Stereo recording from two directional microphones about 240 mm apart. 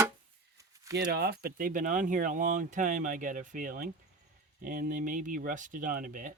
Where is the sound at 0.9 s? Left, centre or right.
Right.